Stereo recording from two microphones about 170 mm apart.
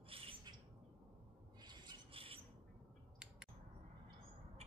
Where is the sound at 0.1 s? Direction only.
35° right (ahead or behind).